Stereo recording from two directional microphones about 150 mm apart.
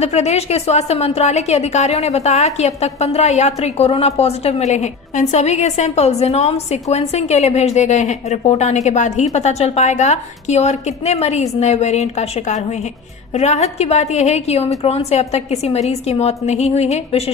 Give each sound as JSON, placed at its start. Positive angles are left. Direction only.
{"t": 0.0, "sound": "a woman's voice", "side_deg": 45}